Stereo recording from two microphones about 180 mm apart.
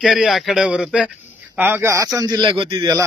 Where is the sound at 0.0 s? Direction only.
5° right (ahead or behind).